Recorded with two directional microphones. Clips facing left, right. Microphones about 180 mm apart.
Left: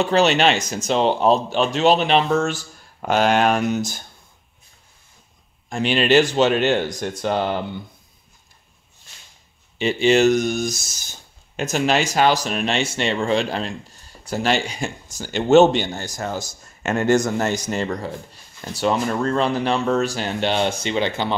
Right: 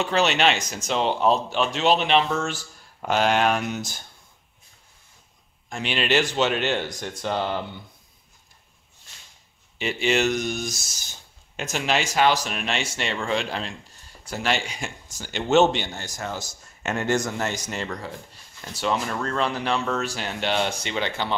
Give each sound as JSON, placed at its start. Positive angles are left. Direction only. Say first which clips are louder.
{"t": 0.0, "sound": "speech", "louder": "left 5 dB", "side_deg": 35}
{"t": 5.7, "sound": "speech", "louder": "left 7 dB", "side_deg": 40}
{"t": 9.8, "sound": "speech", "louder": "left 7 dB", "side_deg": 30}